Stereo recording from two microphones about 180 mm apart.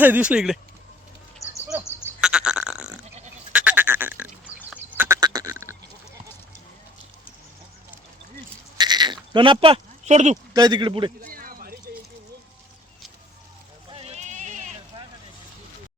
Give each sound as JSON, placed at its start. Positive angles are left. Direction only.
{"t": 0.0, "sound": "speech", "side_deg": -10}
{"t": 2.0, "sound": "sheep", "side_deg": -5}
{"t": 3.5, "sound": "duck", "side_deg": -10}
{"t": 8.8, "sound": "sheep", "side_deg": -25}
{"t": 10.5, "sound": "speech", "side_deg": -25}
{"t": 11.2, "sound": "a sound", "side_deg": -55}
{"t": 13.9, "sound": "sheep", "side_deg": -35}